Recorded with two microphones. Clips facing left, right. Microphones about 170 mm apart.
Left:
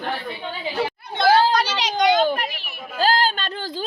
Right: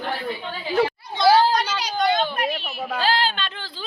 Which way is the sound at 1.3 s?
85° left.